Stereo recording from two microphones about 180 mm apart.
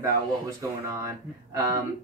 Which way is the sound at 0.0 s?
15° right (ahead or behind).